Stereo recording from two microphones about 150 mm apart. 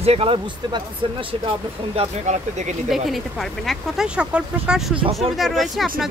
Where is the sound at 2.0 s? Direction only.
50° right (ahead or behind).